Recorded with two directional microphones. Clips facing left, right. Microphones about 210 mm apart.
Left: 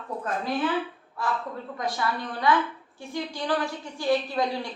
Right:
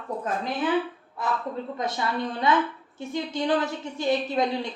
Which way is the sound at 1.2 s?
20° right (ahead or behind).